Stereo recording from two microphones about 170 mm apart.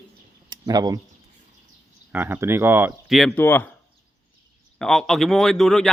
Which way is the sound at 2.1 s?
10° right (ahead or behind).